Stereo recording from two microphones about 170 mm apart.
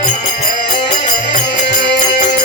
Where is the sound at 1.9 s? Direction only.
90° left.